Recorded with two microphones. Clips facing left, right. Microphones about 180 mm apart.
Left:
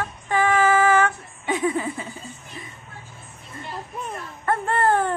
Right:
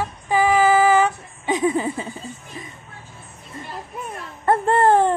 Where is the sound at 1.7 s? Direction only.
30° right (ahead or behind).